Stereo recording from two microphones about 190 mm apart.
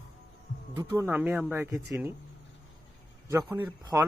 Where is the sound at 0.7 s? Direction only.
15° right (ahead or behind).